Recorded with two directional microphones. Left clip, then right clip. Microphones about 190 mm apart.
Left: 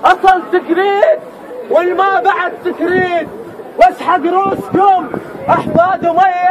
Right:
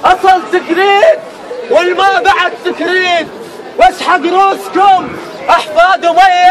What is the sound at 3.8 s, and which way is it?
Speech, 30° left (ahead or behind).